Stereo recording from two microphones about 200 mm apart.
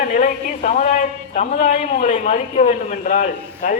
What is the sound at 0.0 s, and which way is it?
A man's voice, 40° left (ahead or behind).